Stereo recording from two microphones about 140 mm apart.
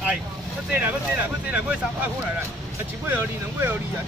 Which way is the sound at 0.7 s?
10° right (ahead or behind).